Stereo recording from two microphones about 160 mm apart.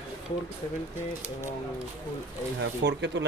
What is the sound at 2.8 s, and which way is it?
Speech, 90° right.